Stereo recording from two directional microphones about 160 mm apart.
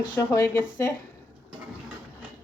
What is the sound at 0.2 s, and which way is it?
Speech, 15° left (ahead or behind).